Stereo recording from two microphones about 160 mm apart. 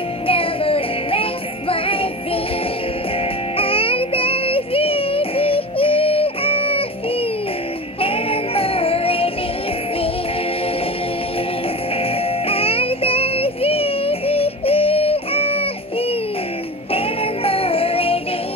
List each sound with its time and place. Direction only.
0.3 s music: 35° left (ahead or behind)
3.5 s music: 35° left (ahead or behind)
8.0 s music: 35° left (ahead or behind)
12.0 s music: 35° left (ahead or behind)